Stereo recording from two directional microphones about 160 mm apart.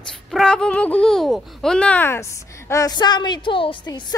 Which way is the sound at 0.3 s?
5° left (ahead or behind).